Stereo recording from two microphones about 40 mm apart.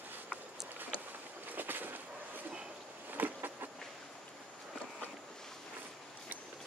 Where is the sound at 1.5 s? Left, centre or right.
Right.